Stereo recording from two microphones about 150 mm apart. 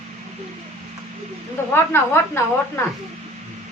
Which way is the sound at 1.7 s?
15° left (ahead or behind).